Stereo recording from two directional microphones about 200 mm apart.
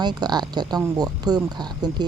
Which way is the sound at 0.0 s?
20° right (ahead or behind).